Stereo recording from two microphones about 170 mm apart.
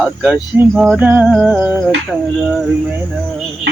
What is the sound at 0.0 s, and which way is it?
Female singing, 5° right (ahead or behind).